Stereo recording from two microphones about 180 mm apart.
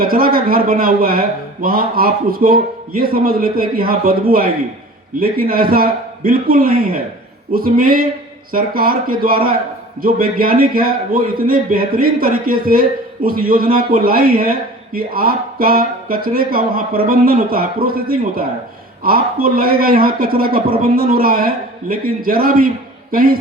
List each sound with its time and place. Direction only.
0.0 s a man's voice: 55° right (ahead or behind)